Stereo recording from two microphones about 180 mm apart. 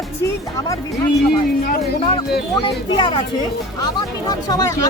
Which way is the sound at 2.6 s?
30° left (ahead or behind).